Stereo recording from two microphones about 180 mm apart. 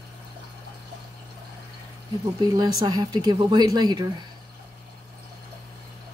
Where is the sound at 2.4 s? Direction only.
25° right (ahead or behind).